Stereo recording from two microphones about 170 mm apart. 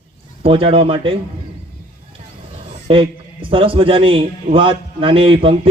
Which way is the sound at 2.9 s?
30° right (ahead or behind).